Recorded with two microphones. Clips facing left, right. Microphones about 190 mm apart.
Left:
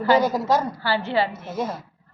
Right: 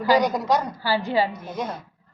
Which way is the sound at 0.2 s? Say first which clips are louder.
Left 1 dB; 5° left (ahead or behind).